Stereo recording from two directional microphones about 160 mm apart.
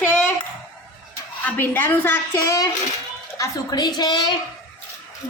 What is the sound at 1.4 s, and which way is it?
Speech, 10° left (ahead or behind).